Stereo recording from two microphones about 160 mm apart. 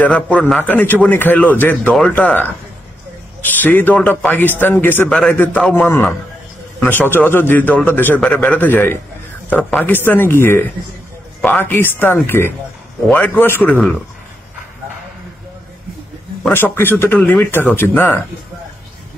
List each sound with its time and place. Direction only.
0.0 s a man's voice: 5° left (ahead or behind)
7.1 s a man's voice: 15° left (ahead or behind)
16.4 s a man's voice: 10° left (ahead or behind)